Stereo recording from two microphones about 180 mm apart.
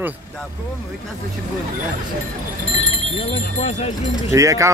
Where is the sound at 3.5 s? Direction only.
40° left (ahead or behind).